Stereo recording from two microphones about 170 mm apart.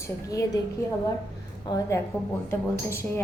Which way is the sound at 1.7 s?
25° left (ahead or behind).